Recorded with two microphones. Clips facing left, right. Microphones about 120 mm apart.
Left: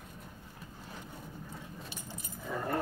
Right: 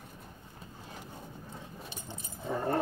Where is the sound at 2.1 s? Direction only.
30° right (ahead or behind).